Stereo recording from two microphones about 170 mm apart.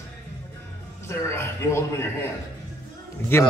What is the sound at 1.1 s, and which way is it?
A man's voice, 15° left (ahead or behind).